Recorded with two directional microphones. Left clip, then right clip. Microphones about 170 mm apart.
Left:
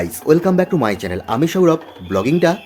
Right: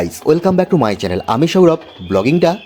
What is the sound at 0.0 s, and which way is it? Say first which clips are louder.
Speech: right 1 dB; 25° right (ahead or behind).